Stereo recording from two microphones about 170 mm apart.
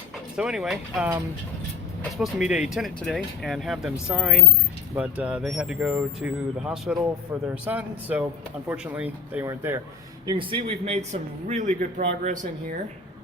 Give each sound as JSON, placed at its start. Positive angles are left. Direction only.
{"t": 0.3, "sound": "speech", "side_deg": -5}
{"t": 10.2, "sound": "speech", "side_deg": -30}